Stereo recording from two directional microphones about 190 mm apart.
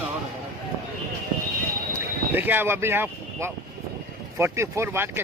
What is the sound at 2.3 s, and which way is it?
Speech, 10° right (ahead or behind).